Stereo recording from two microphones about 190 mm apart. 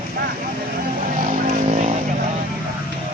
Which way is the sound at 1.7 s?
45° right (ahead or behind).